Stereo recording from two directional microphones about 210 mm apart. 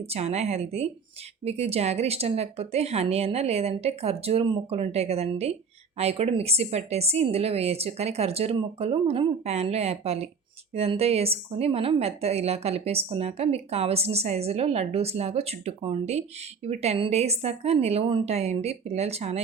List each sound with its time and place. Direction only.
0.0 s a woman's voice: 30° right (ahead or behind)